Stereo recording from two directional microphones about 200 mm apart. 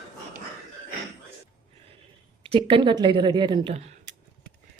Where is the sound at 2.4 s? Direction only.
25° right (ahead or behind).